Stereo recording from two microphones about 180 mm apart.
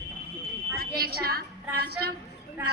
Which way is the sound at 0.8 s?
55° right (ahead or behind).